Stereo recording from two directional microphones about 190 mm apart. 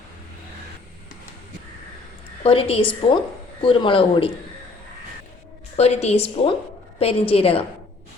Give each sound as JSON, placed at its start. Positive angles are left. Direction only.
{"t": 2.4, "sound": "a woman's voice", "side_deg": 30}
{"t": 5.7, "sound": "a woman's voice", "side_deg": 35}